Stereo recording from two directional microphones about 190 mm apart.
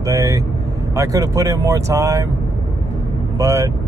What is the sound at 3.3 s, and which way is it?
Speech, 15° right (ahead or behind).